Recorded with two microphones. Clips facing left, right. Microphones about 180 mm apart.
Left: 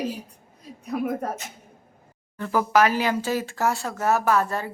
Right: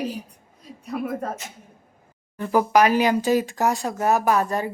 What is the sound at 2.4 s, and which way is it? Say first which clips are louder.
Speech: right 2 dB; 15° right (ahead or behind).